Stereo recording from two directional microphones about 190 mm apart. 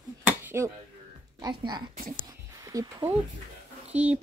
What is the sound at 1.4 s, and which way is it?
A woman's voice, 20° right (ahead or behind).